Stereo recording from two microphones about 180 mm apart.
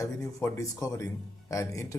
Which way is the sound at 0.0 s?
15° left (ahead or behind).